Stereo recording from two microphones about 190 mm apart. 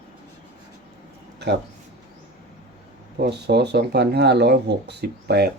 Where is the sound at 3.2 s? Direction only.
60° right (ahead or behind).